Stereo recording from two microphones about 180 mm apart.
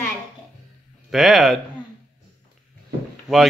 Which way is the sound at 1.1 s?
Centre (ahead or behind).